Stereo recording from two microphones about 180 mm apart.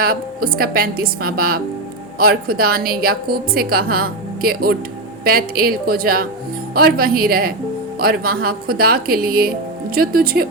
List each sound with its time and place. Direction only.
0.0 s a woman's voice: 55° right (ahead or behind)